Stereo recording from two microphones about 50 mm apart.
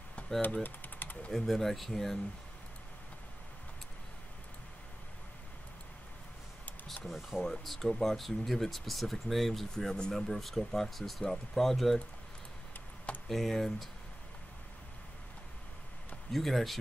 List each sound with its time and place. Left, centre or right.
0.4 s a sound: left
1.3 s speech: centre
6.9 s a sound: centre
7.2 s speech: centre
7.4 s speech: centre
13.3 s speech: centre
16.3 s speech: centre